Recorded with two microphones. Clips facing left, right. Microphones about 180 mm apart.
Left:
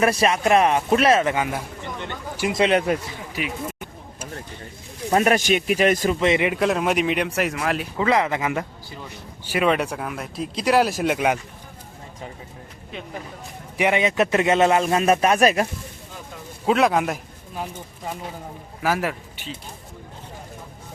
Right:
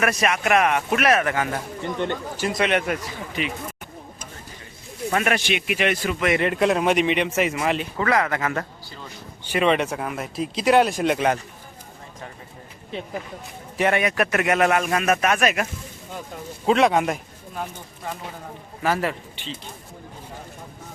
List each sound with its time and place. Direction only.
0.0 s a man's voice: 30° left (ahead or behind); by 1.6 s 15° left (ahead or behind)
2.5 s a man's voice: 25° left (ahead or behind)
3.4 s speech: 5° left (ahead or behind)
5.1 s speech: 35° left (ahead or behind)
6.1 s a man's voice: 25° left (ahead or behind)
6.4 s speech: centre (ahead or behind)
7.9 s speech: 20° left (ahead or behind)
13.7 s a man's voice: 15° left (ahead or behind); by 15.6 s 35° left (ahead or behind)
16.6 s speech: centre (ahead or behind)
18.8 s speech: 5° left (ahead or behind)